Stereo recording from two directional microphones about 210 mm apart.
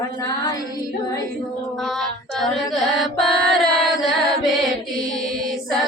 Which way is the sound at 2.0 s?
Centre (ahead or behind).